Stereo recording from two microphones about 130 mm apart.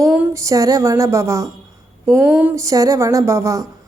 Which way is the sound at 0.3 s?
25° right (ahead or behind).